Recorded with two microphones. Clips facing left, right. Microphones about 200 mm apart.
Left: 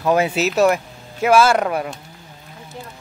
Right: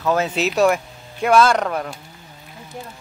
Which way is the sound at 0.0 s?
15° left (ahead or behind).